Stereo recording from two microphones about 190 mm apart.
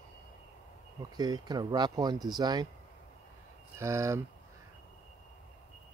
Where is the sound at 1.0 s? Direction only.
20° right (ahead or behind).